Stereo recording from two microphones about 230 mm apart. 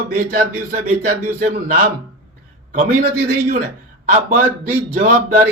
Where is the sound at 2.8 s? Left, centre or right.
Right.